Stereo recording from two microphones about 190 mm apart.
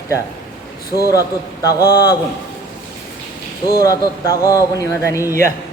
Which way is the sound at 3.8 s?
20° left (ahead or behind).